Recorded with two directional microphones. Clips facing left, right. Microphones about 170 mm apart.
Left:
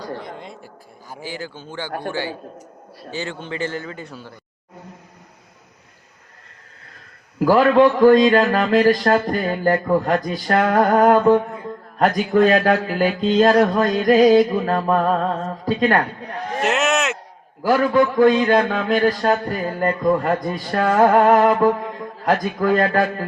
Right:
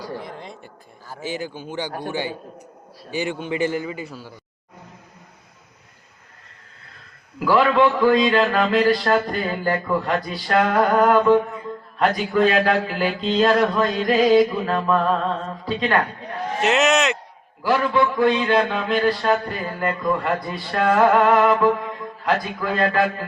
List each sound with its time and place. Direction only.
0.1 s a sound: centre (ahead or behind)
1.2 s a man's voice: 20° right (ahead or behind)
7.3 s a man's voice: 45° left (ahead or behind)
16.6 s speech: centre (ahead or behind)
17.6 s a man's voice: 45° left (ahead or behind)